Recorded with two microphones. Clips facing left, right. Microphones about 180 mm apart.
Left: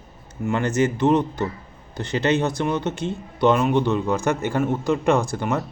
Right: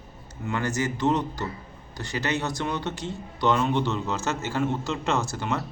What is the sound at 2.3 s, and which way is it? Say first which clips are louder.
Speech: left 6 dB; 20° left (ahead or behind).